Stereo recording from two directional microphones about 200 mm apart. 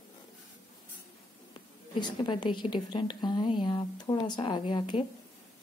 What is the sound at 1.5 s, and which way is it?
A woman's voice, 25° left (ahead or behind).